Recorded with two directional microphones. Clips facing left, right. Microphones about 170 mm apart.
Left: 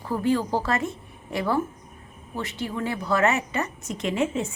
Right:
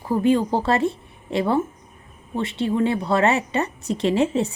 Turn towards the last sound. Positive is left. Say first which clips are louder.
# right 5 dB
turn(degrees=-35)  # may be behind; listen again after turning